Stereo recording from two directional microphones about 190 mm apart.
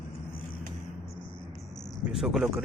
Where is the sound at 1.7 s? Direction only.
20° left (ahead or behind).